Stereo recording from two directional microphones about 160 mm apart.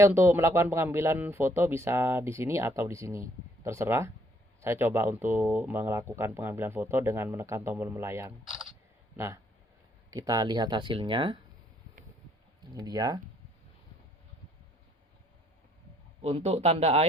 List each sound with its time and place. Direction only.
0.0 s speech: 15° right (ahead or behind); by 11.3 s 30° right (ahead or behind)
12.7 s speech: 25° right (ahead or behind)
16.2 s speech: 40° right (ahead or behind)